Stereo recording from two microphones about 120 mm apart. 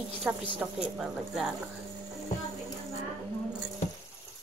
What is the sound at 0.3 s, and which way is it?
A woman's voice, 10° right (ahead or behind).